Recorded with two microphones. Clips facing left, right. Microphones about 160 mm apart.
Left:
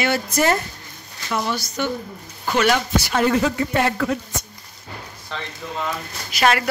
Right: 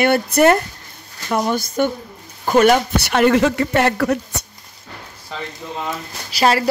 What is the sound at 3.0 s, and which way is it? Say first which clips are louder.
Speech: right 4 dB; 65° right (ahead or behind).